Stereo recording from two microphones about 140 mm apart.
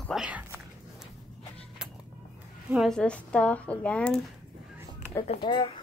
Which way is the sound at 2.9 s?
5° left (ahead or behind).